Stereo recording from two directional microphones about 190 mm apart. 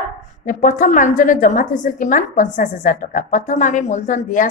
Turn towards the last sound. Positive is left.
turn(degrees=40)  # may be behind; listen again after turning